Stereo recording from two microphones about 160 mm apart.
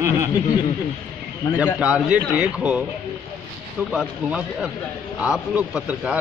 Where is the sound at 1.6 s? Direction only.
10° right (ahead or behind).